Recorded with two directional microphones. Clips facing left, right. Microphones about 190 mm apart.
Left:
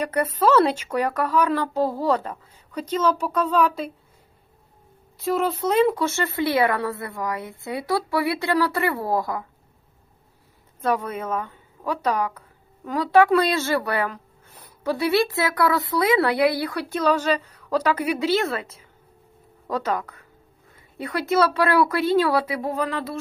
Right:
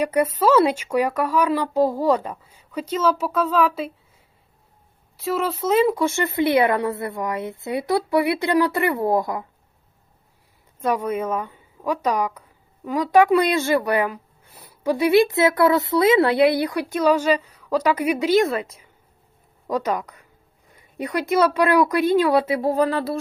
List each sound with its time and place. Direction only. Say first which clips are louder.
0.0 s a woman's voice: right 2 dB; 10° right (ahead or behind)
5.1 s speech: left 1 dB; centre (ahead or behind); by 9.4 s 20° right (ahead or behind)
10.8 s a woman's voice: right 2 dB; 10° right (ahead or behind); by 23.1 s 35° right (ahead or behind)